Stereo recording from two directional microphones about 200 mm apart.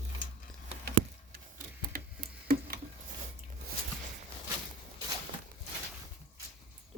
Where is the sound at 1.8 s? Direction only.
45° right (ahead or behind).